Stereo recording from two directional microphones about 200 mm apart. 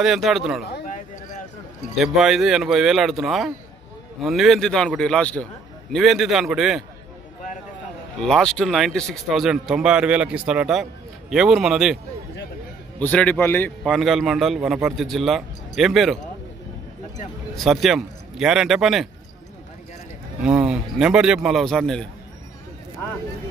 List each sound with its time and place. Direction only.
0.0 s speech: centre (ahead or behind)
0.7 s a sound: 45° left (ahead or behind)
2.0 s speech: centre (ahead or behind)
8.2 s speech: 5° left (ahead or behind)
13.0 s speech: 10° left (ahead or behind)
17.6 s speech: centre (ahead or behind)
20.4 s speech: 5° right (ahead or behind)